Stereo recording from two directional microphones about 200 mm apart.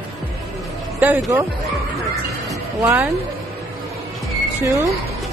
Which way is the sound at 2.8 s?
10° right (ahead or behind).